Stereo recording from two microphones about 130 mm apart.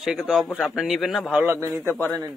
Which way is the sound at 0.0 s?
Centre (ahead or behind).